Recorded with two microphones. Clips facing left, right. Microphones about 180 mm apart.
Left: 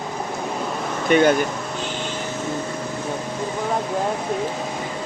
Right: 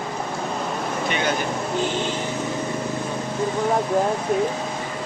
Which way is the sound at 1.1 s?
45° left (ahead or behind).